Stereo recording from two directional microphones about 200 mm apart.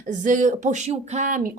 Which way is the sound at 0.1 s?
40° right (ahead or behind).